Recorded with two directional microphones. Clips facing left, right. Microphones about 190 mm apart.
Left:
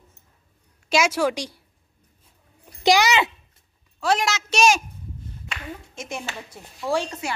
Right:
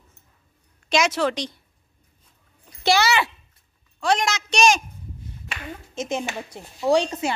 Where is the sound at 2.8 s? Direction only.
15° left (ahead or behind).